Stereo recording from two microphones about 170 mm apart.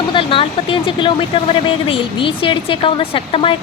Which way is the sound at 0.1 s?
30° left (ahead or behind).